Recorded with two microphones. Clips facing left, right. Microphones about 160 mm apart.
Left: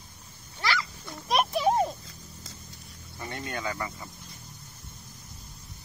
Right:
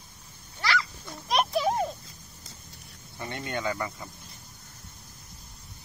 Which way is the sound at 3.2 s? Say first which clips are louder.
Right 2 dB; 25° right (ahead or behind).